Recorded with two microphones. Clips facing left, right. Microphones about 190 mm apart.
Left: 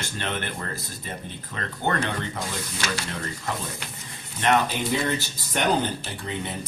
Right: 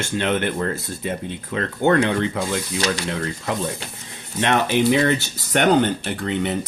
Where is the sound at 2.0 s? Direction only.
75° right (ahead or behind).